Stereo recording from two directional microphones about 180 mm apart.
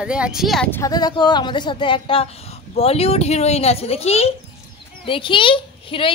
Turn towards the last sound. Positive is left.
turn(degrees=30)  # may be behind; listen again after turning